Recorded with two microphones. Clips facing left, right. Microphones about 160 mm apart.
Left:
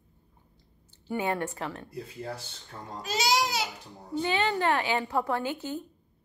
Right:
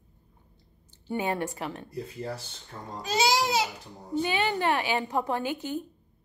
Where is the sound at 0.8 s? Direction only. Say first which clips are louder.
Even; 20° right (ahead or behind).